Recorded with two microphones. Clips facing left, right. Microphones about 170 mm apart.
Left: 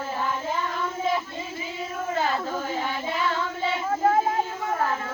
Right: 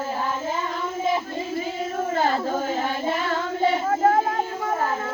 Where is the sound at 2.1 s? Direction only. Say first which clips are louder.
Right 3 dB; 40° right (ahead or behind).